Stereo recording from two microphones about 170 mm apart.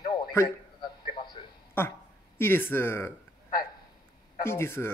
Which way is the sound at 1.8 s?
15° left (ahead or behind).